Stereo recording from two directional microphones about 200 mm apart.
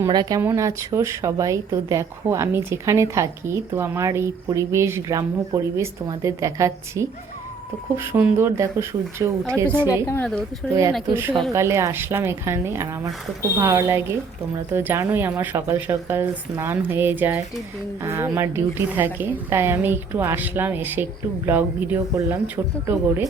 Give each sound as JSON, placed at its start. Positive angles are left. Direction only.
{"t": 0.0, "sound": "speech", "side_deg": -20}
{"t": 9.8, "sound": "a woman's voice", "side_deg": 15}
{"t": 10.6, "sound": "speech", "side_deg": 5}
{"t": 11.1, "sound": "speech", "side_deg": -10}